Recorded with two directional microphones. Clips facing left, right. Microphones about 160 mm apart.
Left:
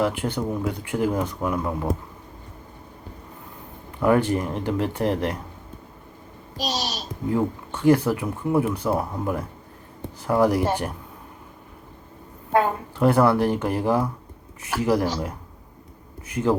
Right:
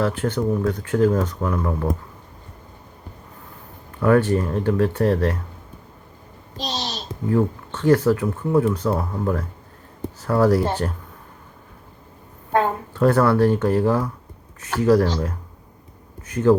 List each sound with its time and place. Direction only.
0.0 s speech: 15° left (ahead or behind)
4.0 s speech: 15° left (ahead or behind)
6.6 s a child's voice: 20° right (ahead or behind)
7.3 s speech: 15° left (ahead or behind)
12.5 s speech: 15° left (ahead or behind)
16.3 s speech: 15° left (ahead or behind)